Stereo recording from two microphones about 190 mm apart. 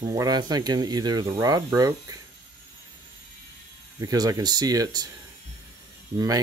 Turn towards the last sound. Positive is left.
turn(degrees=-20)  # may be behind; listen again after turning